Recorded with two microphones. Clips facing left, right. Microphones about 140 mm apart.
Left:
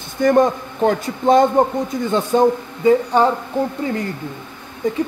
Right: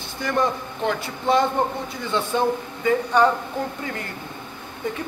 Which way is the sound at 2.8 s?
30° left (ahead or behind).